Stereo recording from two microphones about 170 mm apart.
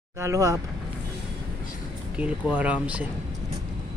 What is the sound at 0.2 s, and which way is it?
Speech, 20° right (ahead or behind).